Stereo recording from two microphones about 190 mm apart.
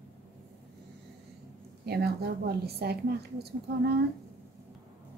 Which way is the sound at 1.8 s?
55° right (ahead or behind).